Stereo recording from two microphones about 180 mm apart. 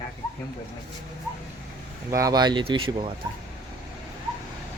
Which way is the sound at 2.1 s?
20° right (ahead or behind).